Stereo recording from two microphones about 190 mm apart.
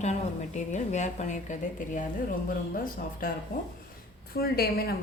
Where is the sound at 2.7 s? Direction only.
50° left (ahead or behind).